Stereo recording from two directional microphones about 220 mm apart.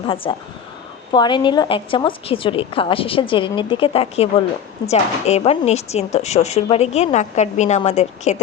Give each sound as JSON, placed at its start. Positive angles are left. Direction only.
{"t": 0.1, "sound": "speech", "side_deg": 25}